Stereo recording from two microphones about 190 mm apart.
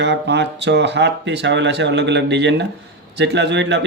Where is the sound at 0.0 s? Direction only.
65° right (ahead or behind).